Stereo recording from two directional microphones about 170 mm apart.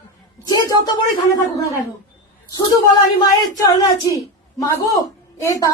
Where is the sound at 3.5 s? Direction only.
20° left (ahead or behind).